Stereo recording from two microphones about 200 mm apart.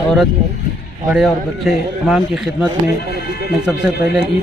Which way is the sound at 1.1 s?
Centre (ahead or behind).